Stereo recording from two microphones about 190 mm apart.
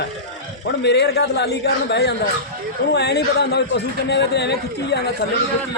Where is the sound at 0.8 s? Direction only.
65° left (ahead or behind).